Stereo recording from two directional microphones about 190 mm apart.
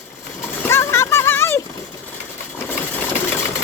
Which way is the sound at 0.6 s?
15° left (ahead or behind).